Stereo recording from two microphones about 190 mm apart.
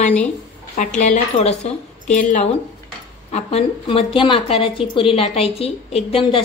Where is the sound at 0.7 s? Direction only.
40° left (ahead or behind).